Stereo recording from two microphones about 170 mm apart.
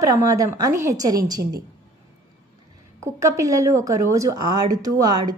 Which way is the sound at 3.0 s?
20° right (ahead or behind).